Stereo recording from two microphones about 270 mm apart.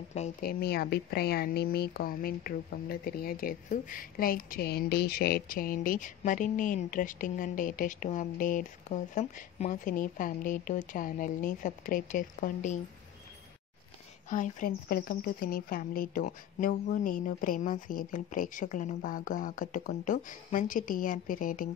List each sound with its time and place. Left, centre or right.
0.1 s speech: left
14.3 s speech: left